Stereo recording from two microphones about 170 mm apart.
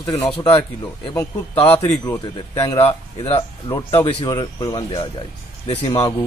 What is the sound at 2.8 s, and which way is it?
Speech, 35° left (ahead or behind).